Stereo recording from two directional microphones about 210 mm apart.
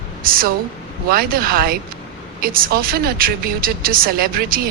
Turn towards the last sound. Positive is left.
turn(degrees=-45)  # may be behind; listen again after turning